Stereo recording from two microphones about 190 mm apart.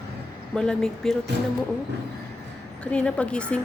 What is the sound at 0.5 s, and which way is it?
Speech, centre (ahead or behind).